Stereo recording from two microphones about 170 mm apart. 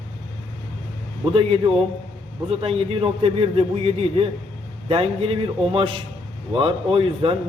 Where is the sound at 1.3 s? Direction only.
30° right (ahead or behind).